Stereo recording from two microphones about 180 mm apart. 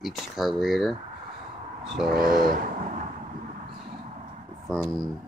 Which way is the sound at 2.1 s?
55° right (ahead or behind).